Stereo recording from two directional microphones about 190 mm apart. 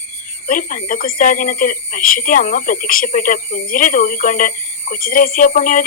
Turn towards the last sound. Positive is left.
turn(degrees=45)  # may be behind; listen again after turning